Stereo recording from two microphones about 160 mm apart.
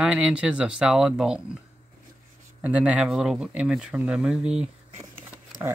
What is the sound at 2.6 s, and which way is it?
Speech, 10° right (ahead or behind).